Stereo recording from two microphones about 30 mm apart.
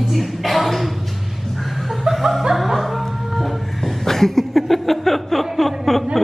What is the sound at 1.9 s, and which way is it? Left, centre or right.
Chuckle, centre.